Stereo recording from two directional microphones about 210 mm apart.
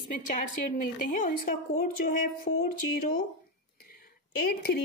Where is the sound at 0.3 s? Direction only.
40° left (ahead or behind).